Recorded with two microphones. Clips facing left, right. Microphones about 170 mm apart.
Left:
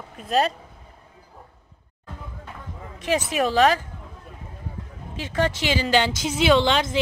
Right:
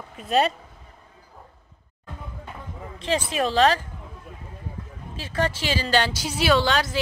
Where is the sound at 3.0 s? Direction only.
10° left (ahead or behind).